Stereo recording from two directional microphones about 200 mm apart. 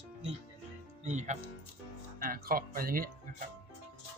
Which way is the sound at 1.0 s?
35° right (ahead or behind).